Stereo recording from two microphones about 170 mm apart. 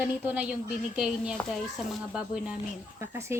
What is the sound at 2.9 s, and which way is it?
Speech, 15° right (ahead or behind).